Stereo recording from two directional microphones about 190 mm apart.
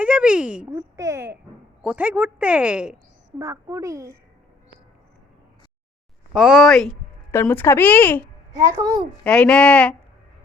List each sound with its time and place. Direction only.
0.0 s speech: 5° right (ahead or behind)
6.3 s speech: 5° right (ahead or behind)
6.9 s speech: 10° left (ahead or behind)
8.5 s a child's voice: 20° right (ahead or behind)
9.2 s speech: 5° left (ahead or behind)